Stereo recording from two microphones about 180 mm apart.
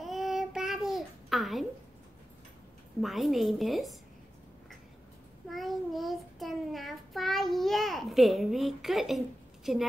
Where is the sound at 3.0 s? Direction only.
Centre (ahead or behind).